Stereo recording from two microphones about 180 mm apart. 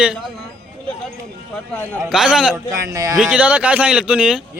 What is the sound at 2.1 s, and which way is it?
Speech, 5° right (ahead or behind).